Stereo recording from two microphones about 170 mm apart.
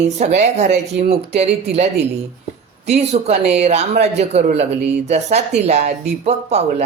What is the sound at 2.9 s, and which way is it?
Speech, 40° right (ahead or behind).